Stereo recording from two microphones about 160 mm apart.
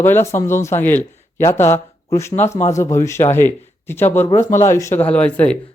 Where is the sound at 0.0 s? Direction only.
15° left (ahead or behind).